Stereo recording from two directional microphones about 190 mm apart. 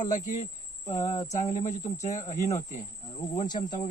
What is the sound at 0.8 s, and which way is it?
Speech, 15° left (ahead or behind).